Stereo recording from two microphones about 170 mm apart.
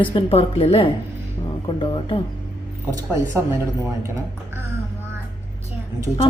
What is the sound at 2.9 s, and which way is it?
Music, 15° right (ahead or behind).